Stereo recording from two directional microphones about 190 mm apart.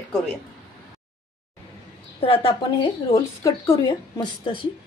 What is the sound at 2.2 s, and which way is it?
A woman's voice, 30° left (ahead or behind).